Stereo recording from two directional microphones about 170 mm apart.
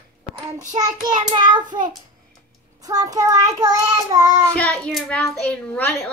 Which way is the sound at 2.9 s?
20° right (ahead or behind).